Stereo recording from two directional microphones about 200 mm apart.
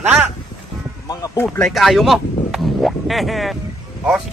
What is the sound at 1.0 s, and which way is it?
Sheep, 15° left (ahead or behind).